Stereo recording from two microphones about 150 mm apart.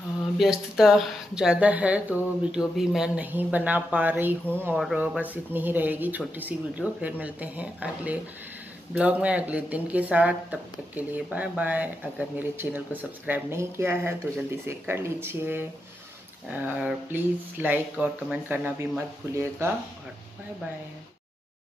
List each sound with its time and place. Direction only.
0.4 s speech: centre (ahead or behind)